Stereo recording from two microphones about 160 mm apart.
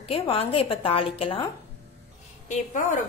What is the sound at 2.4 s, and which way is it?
Speech, 55° left (ahead or behind).